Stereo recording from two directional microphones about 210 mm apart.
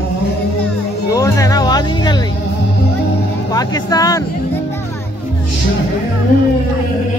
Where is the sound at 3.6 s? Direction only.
20° left (ahead or behind).